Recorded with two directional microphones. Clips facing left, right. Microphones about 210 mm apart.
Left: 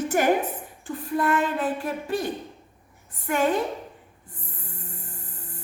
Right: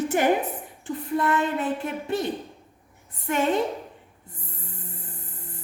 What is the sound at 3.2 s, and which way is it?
Speech, 25° right (ahead or behind).